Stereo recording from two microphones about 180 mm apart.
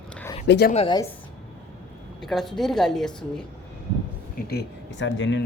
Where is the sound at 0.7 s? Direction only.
35° left (ahead or behind).